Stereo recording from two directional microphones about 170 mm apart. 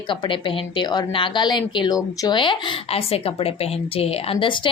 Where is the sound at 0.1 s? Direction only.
30° left (ahead or behind).